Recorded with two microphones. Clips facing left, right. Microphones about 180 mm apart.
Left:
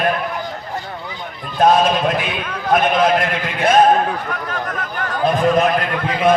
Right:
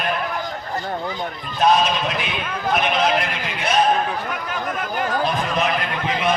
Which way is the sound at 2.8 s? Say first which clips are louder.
Left 5 dB; 50° left (ahead or behind).